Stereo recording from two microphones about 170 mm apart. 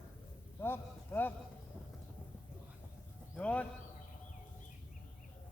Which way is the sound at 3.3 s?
5° left (ahead or behind).